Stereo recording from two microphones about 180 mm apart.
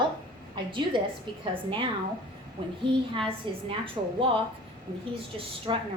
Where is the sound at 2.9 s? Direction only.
30° right (ahead or behind).